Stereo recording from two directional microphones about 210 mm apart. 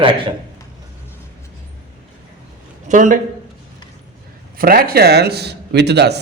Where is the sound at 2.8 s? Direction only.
35° right (ahead or behind).